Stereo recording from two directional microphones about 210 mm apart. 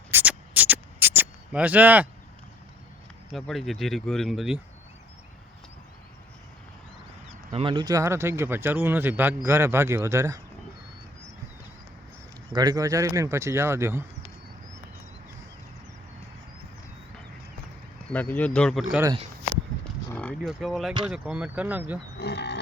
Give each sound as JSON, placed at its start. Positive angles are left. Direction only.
{"t": 0.1, "sound": "a sound", "side_deg": -10}
{"t": 3.3, "sound": "speech", "side_deg": 0}
{"t": 7.5, "sound": "speech", "side_deg": -25}
{"t": 12.5, "sound": "speech", "side_deg": -15}
{"t": 18.1, "sound": "speech", "side_deg": 10}
{"t": 20.1, "sound": "speech", "side_deg": 5}
{"t": 22.2, "sound": "speech", "side_deg": 55}